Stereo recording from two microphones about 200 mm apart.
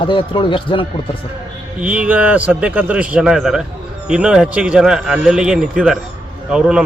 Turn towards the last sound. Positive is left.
turn(degrees=-5)  # may be behind; listen again after turning